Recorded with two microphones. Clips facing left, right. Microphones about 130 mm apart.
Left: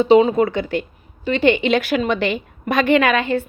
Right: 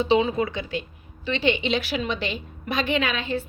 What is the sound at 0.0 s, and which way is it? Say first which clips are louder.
A woman's voice: left 8 dB; 45° left (ahead or behind).